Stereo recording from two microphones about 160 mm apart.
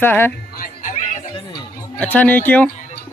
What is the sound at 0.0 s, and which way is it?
Speech, 15° left (ahead or behind).